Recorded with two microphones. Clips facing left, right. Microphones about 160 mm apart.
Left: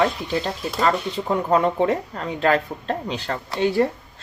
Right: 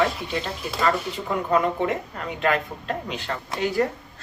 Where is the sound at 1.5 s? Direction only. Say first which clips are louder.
Left 3 dB; 35° left (ahead or behind).